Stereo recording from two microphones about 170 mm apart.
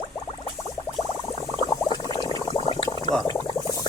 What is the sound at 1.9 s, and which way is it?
Gargling, 25° left (ahead or behind).